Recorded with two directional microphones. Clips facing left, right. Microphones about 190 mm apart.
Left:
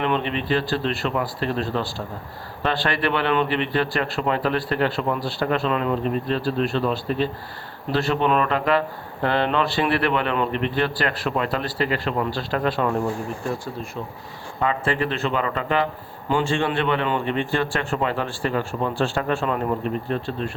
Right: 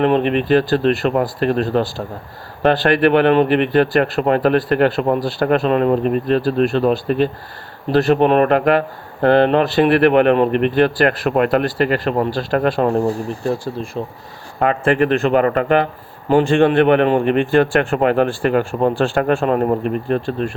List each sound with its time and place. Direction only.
0.0 s a man's voice: 55° right (ahead or behind); by 14.0 s 35° right (ahead or behind)
14.6 s a man's voice: 60° right (ahead or behind)